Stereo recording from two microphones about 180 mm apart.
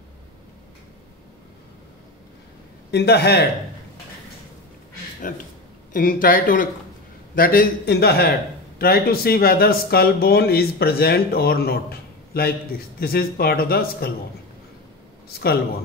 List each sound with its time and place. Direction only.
2.9 s a man's voice: 65° left (ahead or behind)
5.3 s a man's voice: 45° left (ahead or behind)
15.2 s a man's voice: 60° left (ahead or behind)